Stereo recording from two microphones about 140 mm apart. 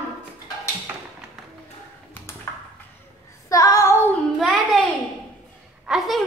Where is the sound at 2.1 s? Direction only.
15° left (ahead or behind).